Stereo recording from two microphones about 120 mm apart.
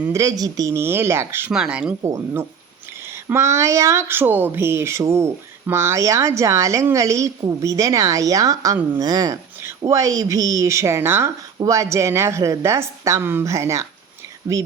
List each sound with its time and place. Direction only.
0.1 s speech: 30° right (ahead or behind)
1.5 s speech: 5° right (ahead or behind)
2.0 s speech: 20° right (ahead or behind)